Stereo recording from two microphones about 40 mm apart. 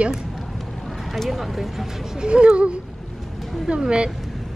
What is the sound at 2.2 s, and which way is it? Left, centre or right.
A woman's voice, right.